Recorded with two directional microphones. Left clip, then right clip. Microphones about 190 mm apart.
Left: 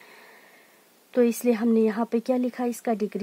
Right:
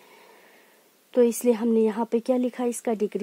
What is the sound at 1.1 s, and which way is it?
Speech, 45° right (ahead or behind).